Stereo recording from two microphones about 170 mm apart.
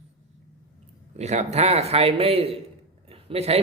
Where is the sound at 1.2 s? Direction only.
40° right (ahead or behind).